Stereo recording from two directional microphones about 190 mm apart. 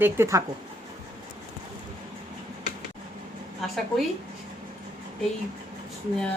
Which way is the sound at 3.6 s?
Centre (ahead or behind).